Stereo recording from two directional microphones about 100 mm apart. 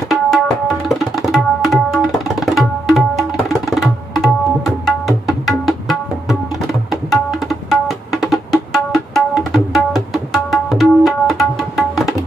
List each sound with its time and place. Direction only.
0.1 s tabla: 5° left (ahead or behind)